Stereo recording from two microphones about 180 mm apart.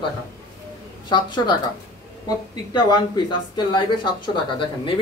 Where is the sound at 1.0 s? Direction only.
25° left (ahead or behind).